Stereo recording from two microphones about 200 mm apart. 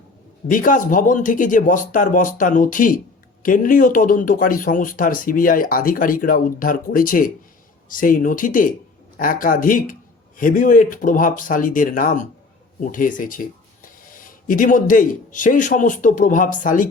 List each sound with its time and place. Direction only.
0.5 s speech: 40° left (ahead or behind)